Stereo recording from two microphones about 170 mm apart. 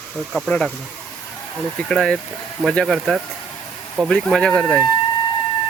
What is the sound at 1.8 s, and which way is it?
Speech, 5° left (ahead or behind).